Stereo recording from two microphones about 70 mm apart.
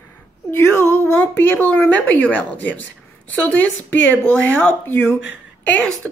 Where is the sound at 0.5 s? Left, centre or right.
Left.